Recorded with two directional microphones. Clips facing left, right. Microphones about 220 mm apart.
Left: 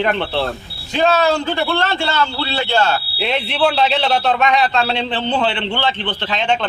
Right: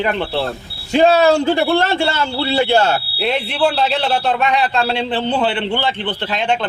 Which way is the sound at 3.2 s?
5° right (ahead or behind).